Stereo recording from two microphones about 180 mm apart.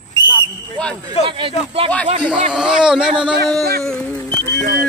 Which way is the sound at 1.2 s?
30° right (ahead or behind).